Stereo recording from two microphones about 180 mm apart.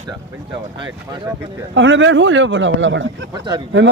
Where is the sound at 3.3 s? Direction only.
25° right (ahead or behind).